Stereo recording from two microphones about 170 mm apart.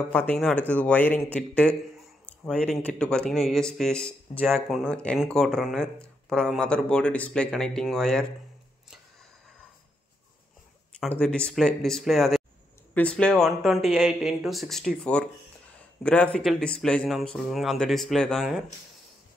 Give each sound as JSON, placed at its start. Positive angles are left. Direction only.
{"t": 0.1, "sound": "speech", "side_deg": 10}
{"t": 11.1, "sound": "speech", "side_deg": 5}